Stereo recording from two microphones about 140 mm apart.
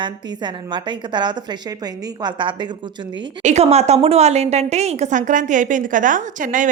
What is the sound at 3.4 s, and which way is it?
A woman's voice, 55° right (ahead or behind).